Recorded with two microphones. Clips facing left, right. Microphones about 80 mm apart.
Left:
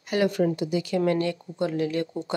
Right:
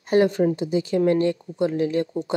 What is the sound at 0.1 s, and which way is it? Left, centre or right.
Speech, right.